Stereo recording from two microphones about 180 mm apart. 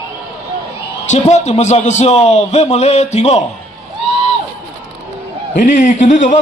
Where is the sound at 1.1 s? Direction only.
40° left (ahead or behind).